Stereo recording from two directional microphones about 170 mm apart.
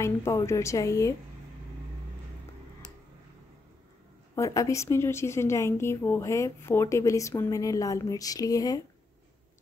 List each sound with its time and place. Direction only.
0.0 s a woman's voice: 15° left (ahead or behind)
4.4 s a woman's voice: 20° left (ahead or behind)